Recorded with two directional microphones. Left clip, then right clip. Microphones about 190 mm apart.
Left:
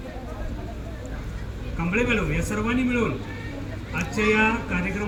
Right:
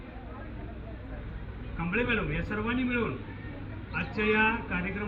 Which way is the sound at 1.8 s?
20° left (ahead or behind).